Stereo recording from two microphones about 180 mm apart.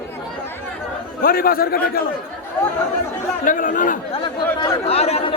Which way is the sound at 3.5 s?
50° left (ahead or behind).